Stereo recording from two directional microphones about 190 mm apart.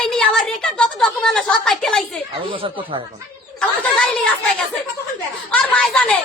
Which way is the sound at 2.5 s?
25° right (ahead or behind).